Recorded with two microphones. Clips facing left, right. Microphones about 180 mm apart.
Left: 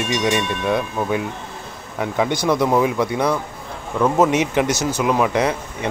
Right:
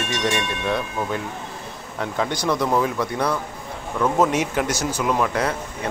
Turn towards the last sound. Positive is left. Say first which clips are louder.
# left 4 dB
turn(degrees=15)  # may be behind; listen again after turning